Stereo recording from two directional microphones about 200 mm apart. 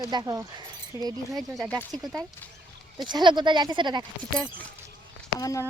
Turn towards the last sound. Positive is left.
turn(degrees=15)  # may be behind; listen again after turning